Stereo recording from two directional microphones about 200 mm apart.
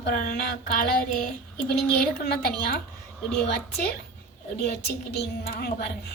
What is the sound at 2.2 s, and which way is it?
A woman's voice, 55° left (ahead or behind).